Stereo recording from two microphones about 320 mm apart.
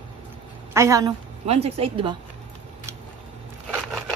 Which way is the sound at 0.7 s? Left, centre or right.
Centre.